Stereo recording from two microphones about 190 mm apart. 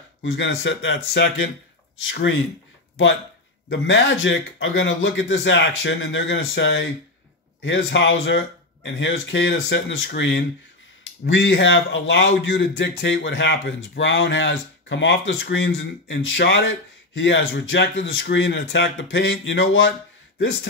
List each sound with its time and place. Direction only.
0.2 s speech: 70° left (ahead or behind)
3.6 s speech: 70° left (ahead or behind); by 19.9 s 85° left